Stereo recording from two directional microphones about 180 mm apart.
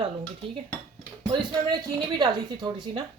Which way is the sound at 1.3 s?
25° right (ahead or behind).